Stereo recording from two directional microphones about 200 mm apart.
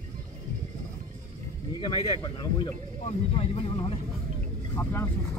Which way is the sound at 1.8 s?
25° left (ahead or behind).